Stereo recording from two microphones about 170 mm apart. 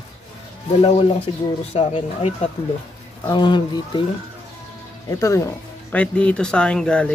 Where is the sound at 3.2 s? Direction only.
25° left (ahead or behind).